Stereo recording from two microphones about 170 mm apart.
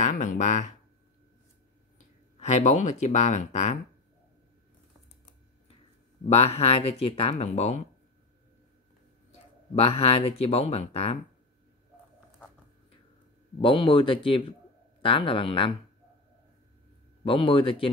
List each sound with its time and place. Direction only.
0.0 s speech: 45° left (ahead or behind)
2.3 s speech: 40° left (ahead or behind)
6.2 s speech: 35° left (ahead or behind)
9.8 s speech: 35° left (ahead or behind)
13.6 s speech: 30° left (ahead or behind)
17.2 s speech: 30° left (ahead or behind)